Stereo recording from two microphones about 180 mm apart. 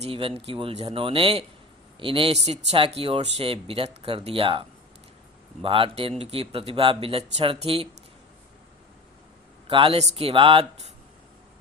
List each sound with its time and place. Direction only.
0.0 s speech: 30° right (ahead or behind)
5.6 s speech: 30° right (ahead or behind)
9.6 s speech: 30° right (ahead or behind)